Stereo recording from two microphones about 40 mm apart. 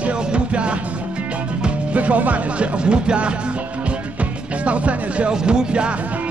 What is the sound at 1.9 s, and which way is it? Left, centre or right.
Speech, right.